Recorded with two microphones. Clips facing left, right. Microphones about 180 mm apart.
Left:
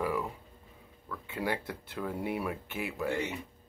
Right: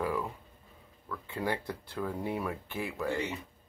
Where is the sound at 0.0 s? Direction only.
5° left (ahead or behind).